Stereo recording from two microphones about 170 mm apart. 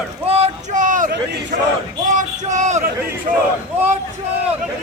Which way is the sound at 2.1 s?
45° right (ahead or behind).